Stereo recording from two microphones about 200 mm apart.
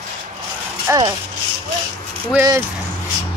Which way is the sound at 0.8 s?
15° right (ahead or behind).